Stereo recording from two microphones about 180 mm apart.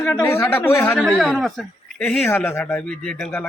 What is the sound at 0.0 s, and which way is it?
Speech, 15° left (ahead or behind).